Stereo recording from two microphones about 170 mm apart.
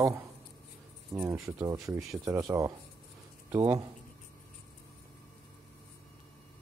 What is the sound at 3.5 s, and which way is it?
Speech, 15° right (ahead or behind).